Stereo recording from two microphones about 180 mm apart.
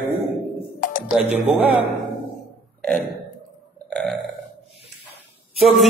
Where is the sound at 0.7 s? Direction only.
50° left (ahead or behind).